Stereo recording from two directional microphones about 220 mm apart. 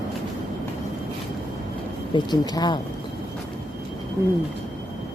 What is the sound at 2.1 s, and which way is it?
Speech, 20° left (ahead or behind).